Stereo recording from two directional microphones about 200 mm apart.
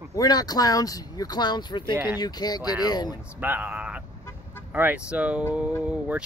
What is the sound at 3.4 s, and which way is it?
Speech, 10° right (ahead or behind).